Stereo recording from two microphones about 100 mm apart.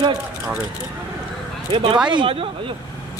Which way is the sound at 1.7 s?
60° right (ahead or behind).